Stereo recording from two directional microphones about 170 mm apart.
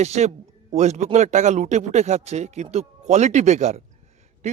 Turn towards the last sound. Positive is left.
turn(degrees=-40)  # may be behind; listen again after turning